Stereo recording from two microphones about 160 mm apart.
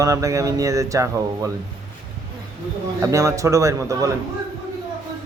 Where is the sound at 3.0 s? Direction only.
20° right (ahead or behind).